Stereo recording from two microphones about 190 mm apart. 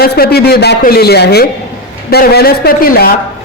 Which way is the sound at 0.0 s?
55° left (ahead or behind).